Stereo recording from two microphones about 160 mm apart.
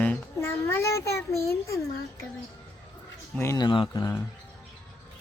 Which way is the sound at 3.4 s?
20° left (ahead or behind).